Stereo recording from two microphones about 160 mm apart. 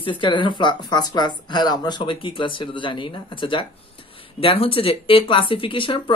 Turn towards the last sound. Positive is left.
turn(degrees=30)  # may be behind; listen again after turning